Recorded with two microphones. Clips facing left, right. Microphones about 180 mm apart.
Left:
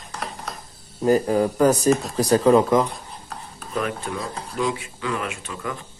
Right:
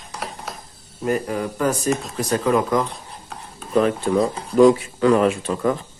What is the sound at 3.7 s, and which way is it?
Speech, 35° right (ahead or behind).